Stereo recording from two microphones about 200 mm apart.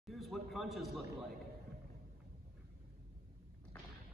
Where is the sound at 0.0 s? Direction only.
Centre (ahead or behind).